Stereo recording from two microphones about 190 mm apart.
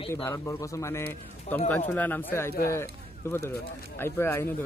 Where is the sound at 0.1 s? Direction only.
15° left (ahead or behind).